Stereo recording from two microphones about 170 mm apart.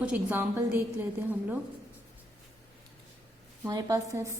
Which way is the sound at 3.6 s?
20° right (ahead or behind).